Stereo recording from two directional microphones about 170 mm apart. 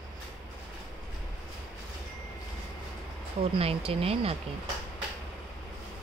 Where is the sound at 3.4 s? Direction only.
35° right (ahead or behind).